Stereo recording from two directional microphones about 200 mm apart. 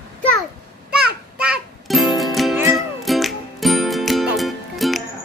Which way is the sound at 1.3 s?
5° right (ahead or behind).